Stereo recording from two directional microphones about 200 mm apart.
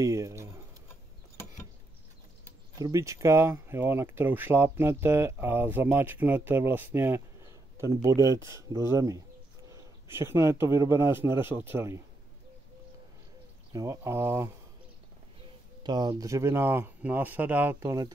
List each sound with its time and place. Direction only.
0.0 s speech: 15° right (ahead or behind)
2.8 s a man's voice: 15° right (ahead or behind)
13.7 s speech: 15° right (ahead or behind)
15.8 s speech: 20° right (ahead or behind)